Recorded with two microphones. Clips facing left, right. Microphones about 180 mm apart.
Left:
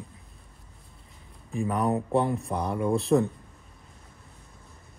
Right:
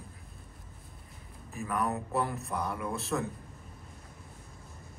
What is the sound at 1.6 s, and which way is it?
Speech, 30° left (ahead or behind).